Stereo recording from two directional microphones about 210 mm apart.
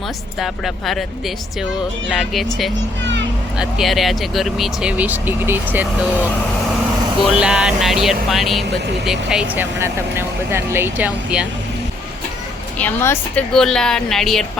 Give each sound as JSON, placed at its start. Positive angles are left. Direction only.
{"t": 0.3, "sound": "speech", "side_deg": 0}
{"t": 2.0, "sound": "speech", "side_deg": 0}
{"t": 3.0, "sound": "vehicle", "side_deg": -55}
{"t": 3.6, "sound": "speech", "side_deg": 0}
{"t": 7.3, "sound": "speech", "side_deg": -5}
{"t": 12.8, "sound": "speech", "side_deg": 10}